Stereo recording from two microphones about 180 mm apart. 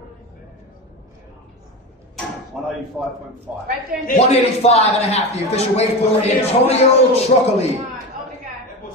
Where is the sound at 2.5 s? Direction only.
Centre (ahead or behind).